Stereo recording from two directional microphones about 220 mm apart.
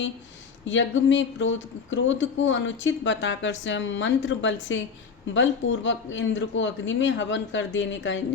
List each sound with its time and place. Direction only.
0.7 s speech: 55° left (ahead or behind)